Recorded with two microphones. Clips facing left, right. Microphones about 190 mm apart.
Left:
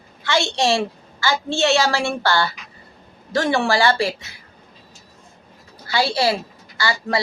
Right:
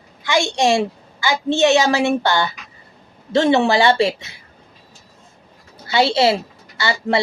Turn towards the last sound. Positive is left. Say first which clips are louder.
# right 3 dB
turn(degrees=-25)  # may be behind; listen again after turning